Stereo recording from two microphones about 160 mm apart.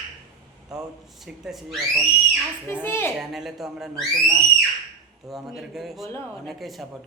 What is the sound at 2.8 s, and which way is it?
Speech, 15° left (ahead or behind).